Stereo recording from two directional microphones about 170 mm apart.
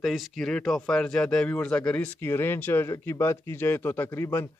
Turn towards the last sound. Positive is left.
turn(degrees=15)  # may be behind; listen again after turning